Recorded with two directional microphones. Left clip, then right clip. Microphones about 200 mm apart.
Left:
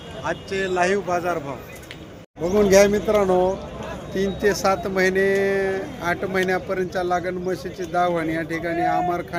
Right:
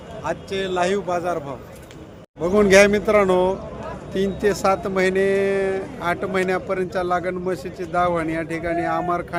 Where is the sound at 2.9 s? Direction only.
25° right (ahead or behind).